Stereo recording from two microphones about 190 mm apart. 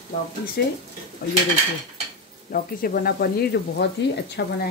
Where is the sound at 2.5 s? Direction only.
50° left (ahead or behind).